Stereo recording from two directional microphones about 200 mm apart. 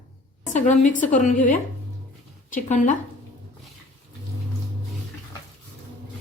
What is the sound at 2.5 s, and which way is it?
Speech, 40° left (ahead or behind).